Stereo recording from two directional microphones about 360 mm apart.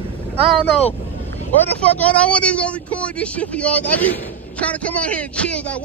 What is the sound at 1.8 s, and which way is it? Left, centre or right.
Speech, centre.